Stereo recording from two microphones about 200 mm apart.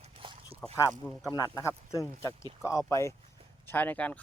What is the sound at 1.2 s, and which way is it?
Speech, 20° left (ahead or behind).